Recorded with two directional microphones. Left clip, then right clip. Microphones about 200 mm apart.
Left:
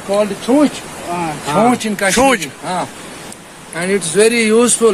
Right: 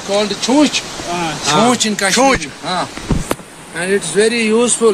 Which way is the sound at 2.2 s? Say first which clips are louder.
Even; 15° left (ahead or behind).